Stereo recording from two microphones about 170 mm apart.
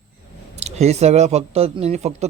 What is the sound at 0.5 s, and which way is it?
Speech, 40° right (ahead or behind).